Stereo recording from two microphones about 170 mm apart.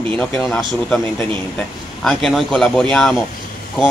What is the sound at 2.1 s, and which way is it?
Speech, centre (ahead or behind).